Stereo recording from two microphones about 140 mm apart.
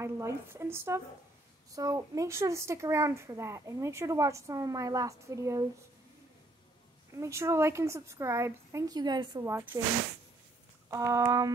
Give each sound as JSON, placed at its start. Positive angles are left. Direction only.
{"t": 0.0, "sound": "speech", "side_deg": -20}
{"t": 7.1, "sound": "speech", "side_deg": -20}
{"t": 9.5, "sound": "speech", "side_deg": -15}
{"t": 10.9, "sound": "speech", "side_deg": -25}